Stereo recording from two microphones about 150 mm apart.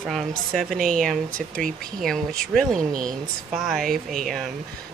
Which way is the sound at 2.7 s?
65° right (ahead or behind).